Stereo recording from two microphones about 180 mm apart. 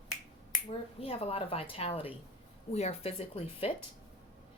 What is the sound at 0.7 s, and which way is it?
Speech, 30° left (ahead or behind).